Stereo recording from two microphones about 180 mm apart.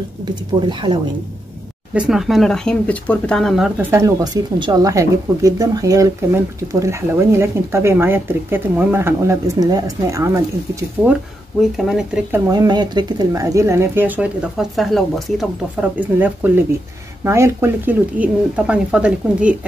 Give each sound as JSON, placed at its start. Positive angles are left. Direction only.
{"t": 0.6, "sound": "speech", "side_deg": -25}
{"t": 2.0, "sound": "speech", "side_deg": 0}
{"t": 3.9, "sound": "speech", "side_deg": -20}
{"t": 11.7, "sound": "speech", "side_deg": -5}
{"t": 12.4, "sound": "speech", "side_deg": -25}